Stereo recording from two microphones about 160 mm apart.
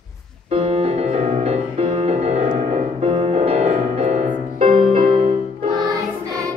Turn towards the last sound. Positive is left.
turn(degrees=-20)  # may be behind; listen again after turning